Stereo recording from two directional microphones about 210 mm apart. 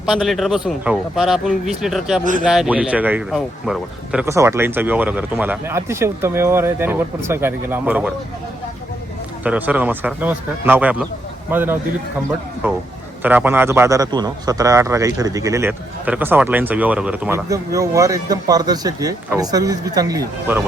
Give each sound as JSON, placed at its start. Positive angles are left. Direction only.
{"t": 0.0, "sound": "a man's voice", "side_deg": 0}
{"t": 9.4, "sound": "a man's voice", "side_deg": -10}